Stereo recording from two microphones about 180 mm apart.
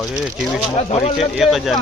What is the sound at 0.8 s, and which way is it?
Speech, 35° left (ahead or behind).